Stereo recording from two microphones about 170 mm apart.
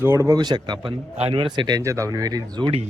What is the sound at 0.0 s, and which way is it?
Speech, 15° right (ahead or behind).